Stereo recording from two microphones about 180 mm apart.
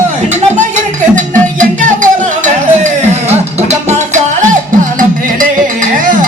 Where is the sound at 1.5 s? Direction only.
45° right (ahead or behind).